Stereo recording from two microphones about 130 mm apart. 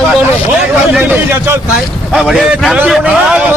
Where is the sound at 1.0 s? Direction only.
20° right (ahead or behind).